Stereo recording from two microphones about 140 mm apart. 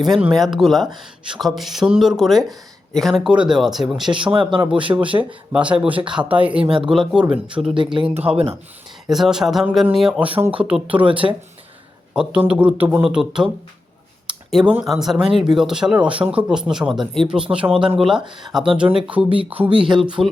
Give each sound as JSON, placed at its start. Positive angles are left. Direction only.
{"t": 0.0, "sound": "speech", "side_deg": 0}
{"t": 4.1, "sound": "speech", "side_deg": -35}
{"t": 4.7, "sound": "speech", "side_deg": -10}
{"t": 7.9, "sound": "speech", "side_deg": -45}
{"t": 9.0, "sound": "speech", "side_deg": 0}
{"t": 19.7, "sound": "speech", "side_deg": -40}